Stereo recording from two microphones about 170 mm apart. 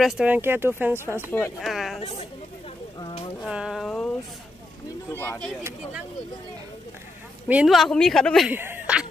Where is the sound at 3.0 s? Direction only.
30° left (ahead or behind).